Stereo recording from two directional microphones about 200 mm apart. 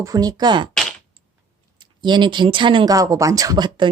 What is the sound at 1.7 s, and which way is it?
Speech, 20° right (ahead or behind).